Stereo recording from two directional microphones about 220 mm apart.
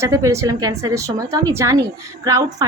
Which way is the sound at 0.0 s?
15° right (ahead or behind).